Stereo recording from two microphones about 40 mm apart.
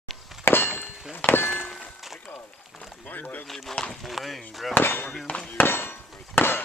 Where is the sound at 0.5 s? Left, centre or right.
Left.